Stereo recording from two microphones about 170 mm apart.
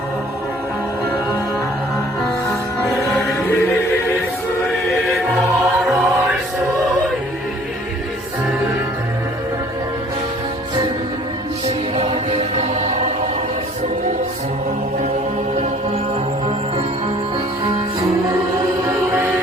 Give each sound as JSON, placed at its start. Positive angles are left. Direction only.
{"t": 2.2, "sound": "music", "side_deg": 0}
{"t": 5.1, "sound": "music", "side_deg": 0}
{"t": 11.9, "sound": "music", "side_deg": -35}
{"t": 18.9, "sound": "music", "side_deg": -15}